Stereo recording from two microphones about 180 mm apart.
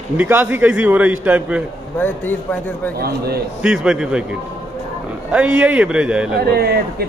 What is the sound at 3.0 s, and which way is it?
Speech, 60° right (ahead or behind).